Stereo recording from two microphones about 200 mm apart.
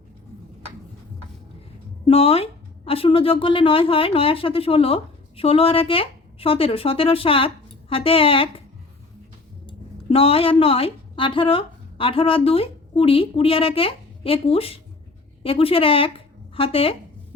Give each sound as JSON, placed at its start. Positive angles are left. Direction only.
{"t": 2.0, "sound": "speech", "side_deg": 30}
{"t": 9.6, "sound": "a woman's voice", "side_deg": 30}